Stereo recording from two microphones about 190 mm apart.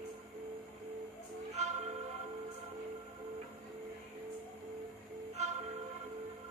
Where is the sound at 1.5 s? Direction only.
35° right (ahead or behind).